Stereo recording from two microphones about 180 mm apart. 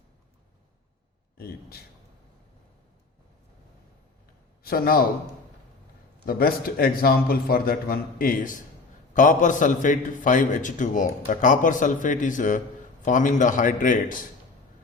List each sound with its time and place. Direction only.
1.4 s speech: 60° left (ahead or behind)
4.6 s a man's voice: 55° left (ahead or behind)
6.2 s a man's voice: 55° left (ahead or behind)